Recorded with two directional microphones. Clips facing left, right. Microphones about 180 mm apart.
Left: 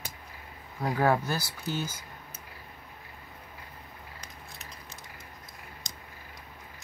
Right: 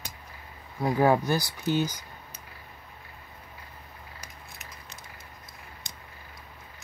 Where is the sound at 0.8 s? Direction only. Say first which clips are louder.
Right 4 dB; 15° right (ahead or behind).